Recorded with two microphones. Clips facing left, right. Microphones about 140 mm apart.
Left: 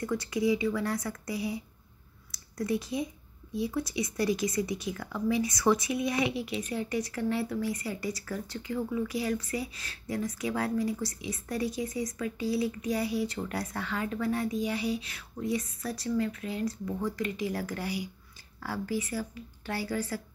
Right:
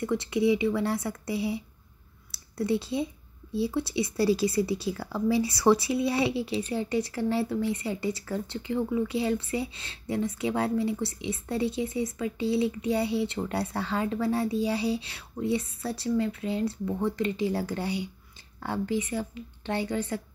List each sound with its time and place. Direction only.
0.0 s speech: 25° right (ahead or behind)